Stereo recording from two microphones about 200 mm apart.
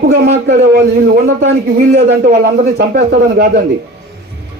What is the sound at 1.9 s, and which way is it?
A man's voice, 40° right (ahead or behind).